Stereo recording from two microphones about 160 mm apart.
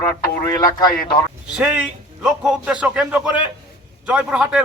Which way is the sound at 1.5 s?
10° right (ahead or behind).